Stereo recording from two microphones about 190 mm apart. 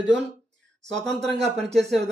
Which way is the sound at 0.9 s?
Centre (ahead or behind).